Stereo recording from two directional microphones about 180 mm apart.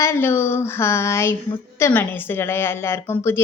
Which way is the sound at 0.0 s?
15° left (ahead or behind).